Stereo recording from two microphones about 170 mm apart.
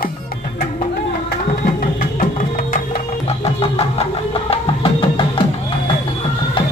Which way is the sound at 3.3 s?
35° left (ahead or behind).